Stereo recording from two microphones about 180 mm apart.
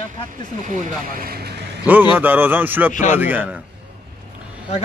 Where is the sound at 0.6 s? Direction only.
50° right (ahead or behind).